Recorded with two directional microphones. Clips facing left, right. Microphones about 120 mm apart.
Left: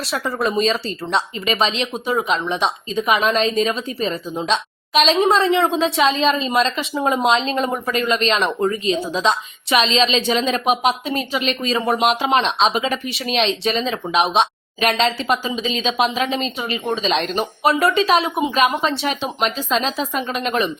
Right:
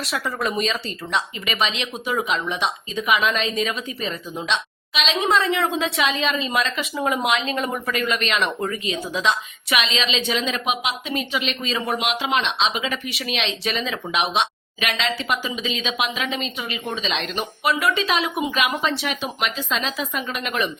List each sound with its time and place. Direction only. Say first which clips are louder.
0.0 s speech: left 4 dB; 30° left (ahead or behind)